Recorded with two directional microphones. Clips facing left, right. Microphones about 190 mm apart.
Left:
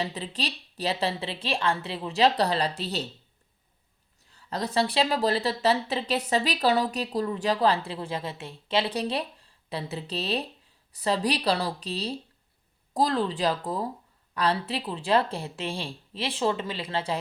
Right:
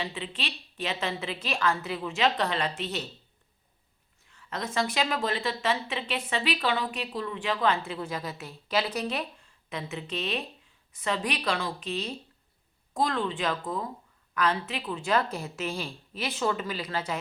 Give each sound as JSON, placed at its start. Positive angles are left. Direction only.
{"t": 0.0, "sound": "speech", "side_deg": 40}
{"t": 4.3, "sound": "a woman's voice", "side_deg": 35}